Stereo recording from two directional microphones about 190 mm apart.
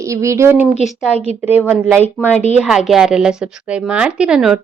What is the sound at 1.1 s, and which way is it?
Speech, 30° left (ahead or behind).